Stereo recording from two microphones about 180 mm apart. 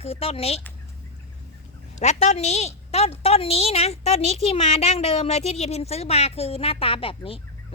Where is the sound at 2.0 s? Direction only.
40° left (ahead or behind).